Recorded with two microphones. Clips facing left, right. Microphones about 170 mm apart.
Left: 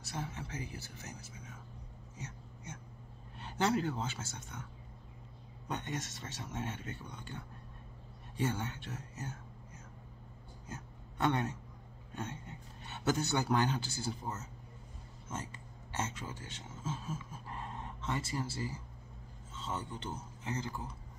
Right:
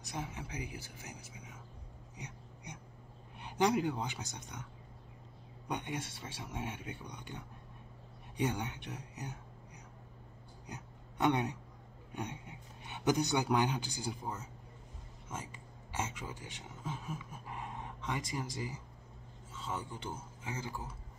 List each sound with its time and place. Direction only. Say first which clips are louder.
0.0 s speech: even; 15° right (ahead or behind)
2.1 s a sound: left 1 dB; 15° right (ahead or behind)
3.3 s speech: right 2 dB; 15° right (ahead or behind)
5.7 s speech: right 1 dB; 15° right (ahead or behind)
10.7 s a sound: left 1 dB; 15° right (ahead or behind)
12.1 s speech: even; 15° right (ahead or behind)